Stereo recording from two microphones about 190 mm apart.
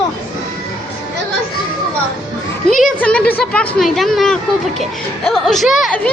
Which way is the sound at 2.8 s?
5° left (ahead or behind).